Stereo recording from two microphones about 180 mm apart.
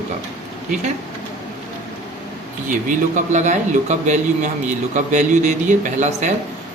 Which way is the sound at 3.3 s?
40° right (ahead or behind).